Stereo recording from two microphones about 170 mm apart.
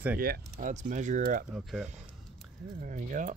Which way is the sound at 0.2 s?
55° right (ahead or behind).